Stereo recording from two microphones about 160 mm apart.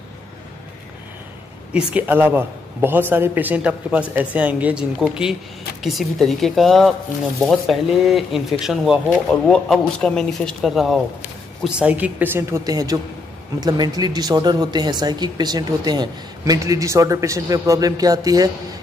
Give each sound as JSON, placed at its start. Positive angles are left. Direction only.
{"t": 1.9, "sound": "a man's voice", "side_deg": -10}